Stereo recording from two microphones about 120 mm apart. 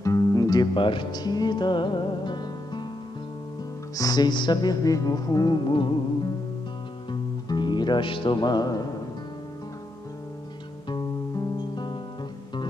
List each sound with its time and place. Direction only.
0.0 s music: 30° left (ahead or behind)
0.7 s music: 45° left (ahead or behind)
3.9 s music: 30° left (ahead or behind)
7.1 s music: 40° left (ahead or behind)
10.9 s music: 35° left (ahead or behind)